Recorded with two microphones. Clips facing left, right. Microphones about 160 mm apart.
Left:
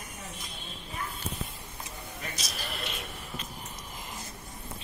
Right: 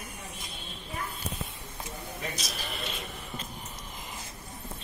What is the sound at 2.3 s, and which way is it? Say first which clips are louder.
A man's voice: right 1 dB; centre (ahead or behind).